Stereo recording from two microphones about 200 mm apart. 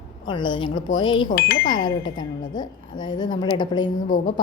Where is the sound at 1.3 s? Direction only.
55° left (ahead or behind).